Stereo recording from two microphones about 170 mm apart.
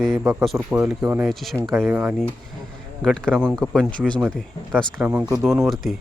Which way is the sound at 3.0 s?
5° left (ahead or behind).